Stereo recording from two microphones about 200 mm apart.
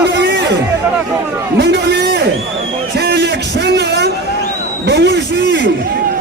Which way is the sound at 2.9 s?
55° right (ahead or behind).